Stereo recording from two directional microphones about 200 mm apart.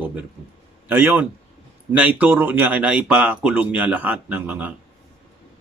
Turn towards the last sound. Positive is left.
turn(degrees=-5)  # may be behind; listen again after turning